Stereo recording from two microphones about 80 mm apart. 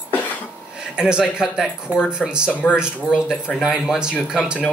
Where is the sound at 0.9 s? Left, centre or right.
Centre.